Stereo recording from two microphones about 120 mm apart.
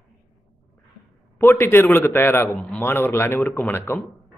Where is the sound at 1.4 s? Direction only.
20° left (ahead or behind).